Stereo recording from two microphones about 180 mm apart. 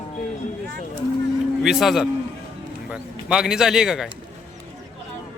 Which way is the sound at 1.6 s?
Centre (ahead or behind).